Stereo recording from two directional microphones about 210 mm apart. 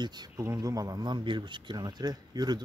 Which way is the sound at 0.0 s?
20° right (ahead or behind).